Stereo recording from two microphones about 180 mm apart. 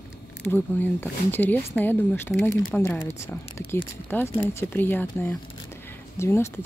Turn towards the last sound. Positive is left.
turn(degrees=15)  # may be behind; listen again after turning